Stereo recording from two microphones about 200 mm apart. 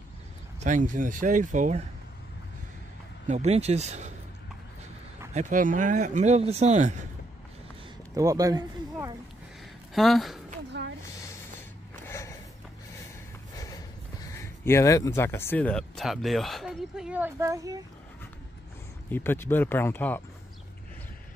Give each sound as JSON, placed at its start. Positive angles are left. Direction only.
{"t": 0.6, "sound": "speech", "side_deg": -40}
{"t": 3.3, "sound": "speech", "side_deg": -35}
{"t": 5.3, "sound": "speech", "side_deg": -40}
{"t": 8.1, "sound": "speech", "side_deg": -15}
{"t": 9.9, "sound": "speech", "side_deg": 0}
{"t": 10.8, "sound": "a sound", "side_deg": -60}
{"t": 12.1, "sound": "a sound", "side_deg": 15}
{"t": 14.2, "sound": "speech", "side_deg": 15}
{"t": 19.0, "sound": "speech", "side_deg": 10}